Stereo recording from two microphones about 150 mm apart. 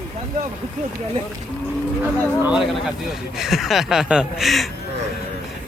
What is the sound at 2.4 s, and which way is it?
Speech, 5° right (ahead or behind).